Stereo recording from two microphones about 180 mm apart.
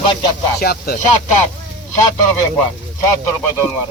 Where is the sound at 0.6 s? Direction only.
60° left (ahead or behind).